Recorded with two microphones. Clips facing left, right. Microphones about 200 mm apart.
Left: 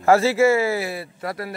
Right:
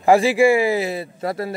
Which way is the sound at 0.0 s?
15° right (ahead or behind).